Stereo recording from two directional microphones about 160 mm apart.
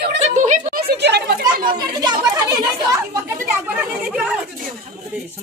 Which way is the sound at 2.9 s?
20° right (ahead or behind).